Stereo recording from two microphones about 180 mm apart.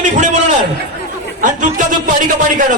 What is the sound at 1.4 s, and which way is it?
Speech, 45° right (ahead or behind).